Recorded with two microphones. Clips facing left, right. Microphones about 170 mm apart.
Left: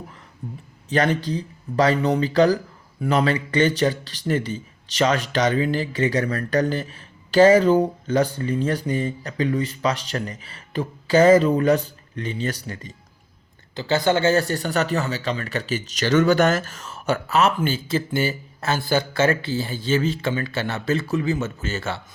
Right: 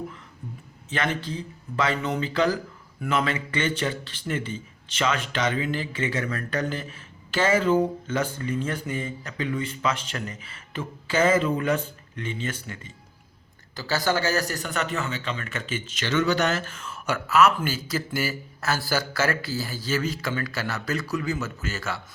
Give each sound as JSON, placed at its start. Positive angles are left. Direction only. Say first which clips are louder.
{"t": 0.9, "sound": "a man's voice", "louder": "left 7 dB", "side_deg": 35}
{"t": 13.7, "sound": "a man's voice", "louder": "left 5 dB", "side_deg": 20}